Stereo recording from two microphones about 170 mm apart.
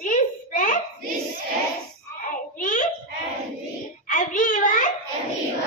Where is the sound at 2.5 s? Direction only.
50° left (ahead or behind).